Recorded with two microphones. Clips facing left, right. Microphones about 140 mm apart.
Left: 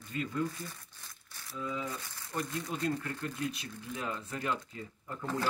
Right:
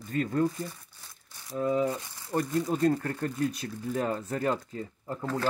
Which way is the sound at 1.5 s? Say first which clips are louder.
Right 11 dB; 50° right (ahead or behind).